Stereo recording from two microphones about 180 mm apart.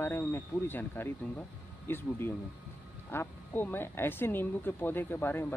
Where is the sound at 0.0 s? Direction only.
10° left (ahead or behind).